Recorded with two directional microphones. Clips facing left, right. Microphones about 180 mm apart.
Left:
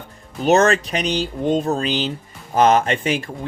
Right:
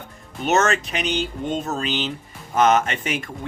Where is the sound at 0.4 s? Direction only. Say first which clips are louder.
Left 5 dB; 35° left (ahead or behind).